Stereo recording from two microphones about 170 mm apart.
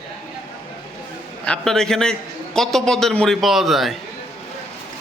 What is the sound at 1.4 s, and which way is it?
A man's voice, 5° left (ahead or behind).